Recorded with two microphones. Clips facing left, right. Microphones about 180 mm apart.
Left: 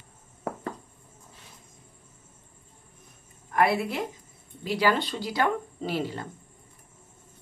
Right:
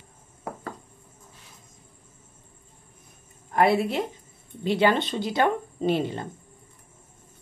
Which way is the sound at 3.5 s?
25° right (ahead or behind).